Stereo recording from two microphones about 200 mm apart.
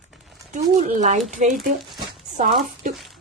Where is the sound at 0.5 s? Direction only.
35° right (ahead or behind).